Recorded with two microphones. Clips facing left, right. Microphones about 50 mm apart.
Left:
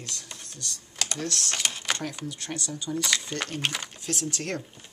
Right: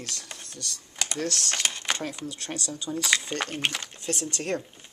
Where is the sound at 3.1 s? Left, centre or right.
Centre.